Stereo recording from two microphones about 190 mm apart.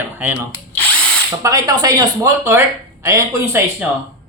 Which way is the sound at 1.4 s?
20° right (ahead or behind).